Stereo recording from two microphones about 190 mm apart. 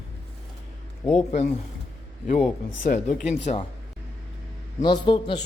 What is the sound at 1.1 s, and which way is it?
Speech, 35° left (ahead or behind).